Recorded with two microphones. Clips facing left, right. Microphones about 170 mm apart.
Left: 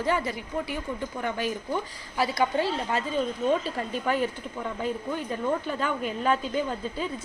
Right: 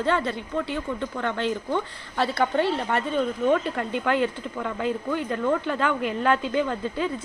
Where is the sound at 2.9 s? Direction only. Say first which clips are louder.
Right 3 dB; 65° right (ahead or behind).